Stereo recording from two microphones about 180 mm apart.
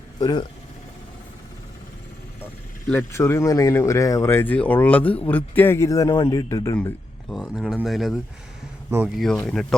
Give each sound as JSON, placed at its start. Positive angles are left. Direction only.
{"t": 0.2, "sound": "speech", "side_deg": 20}
{"t": 2.9, "sound": "speech", "side_deg": 15}
{"t": 6.7, "sound": "speech", "side_deg": 5}